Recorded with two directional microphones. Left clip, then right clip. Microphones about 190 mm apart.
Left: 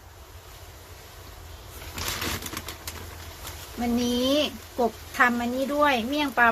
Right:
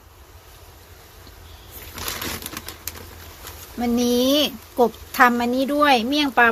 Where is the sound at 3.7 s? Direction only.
50° right (ahead or behind).